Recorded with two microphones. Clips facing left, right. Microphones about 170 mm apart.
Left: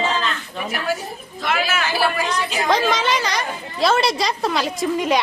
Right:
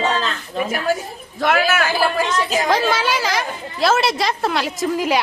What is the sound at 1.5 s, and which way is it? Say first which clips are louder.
Speech: right 4 dB; 55° right (ahead or behind).